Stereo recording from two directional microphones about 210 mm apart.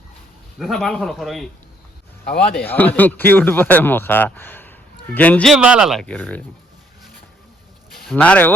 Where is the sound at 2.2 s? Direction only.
50° left (ahead or behind).